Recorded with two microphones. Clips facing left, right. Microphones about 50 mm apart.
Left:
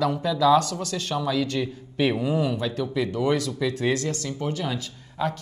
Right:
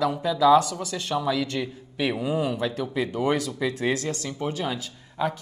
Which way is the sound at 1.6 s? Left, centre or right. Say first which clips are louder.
Left 3 dB; centre.